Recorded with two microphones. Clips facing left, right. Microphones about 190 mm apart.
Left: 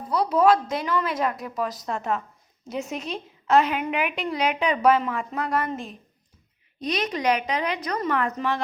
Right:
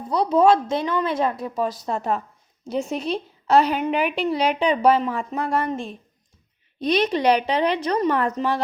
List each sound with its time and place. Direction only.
0.1 s a woman's voice: 25° right (ahead or behind)
7.1 s a woman's voice: 30° right (ahead or behind)